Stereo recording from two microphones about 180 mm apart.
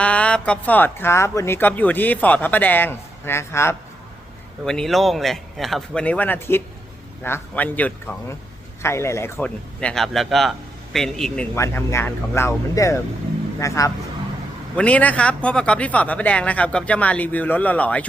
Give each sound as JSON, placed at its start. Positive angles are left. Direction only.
{"t": 0.0, "sound": "speech", "side_deg": 5}
{"t": 4.6, "sound": "a man's voice", "side_deg": 5}
{"t": 11.5, "sound": "speech", "side_deg": 15}
{"t": 14.8, "sound": "speech", "side_deg": 5}